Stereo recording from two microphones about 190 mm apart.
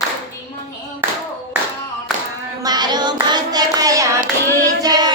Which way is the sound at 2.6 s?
20° right (ahead or behind).